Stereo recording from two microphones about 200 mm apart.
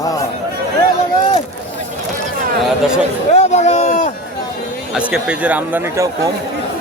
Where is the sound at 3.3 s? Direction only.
35° left (ahead or behind).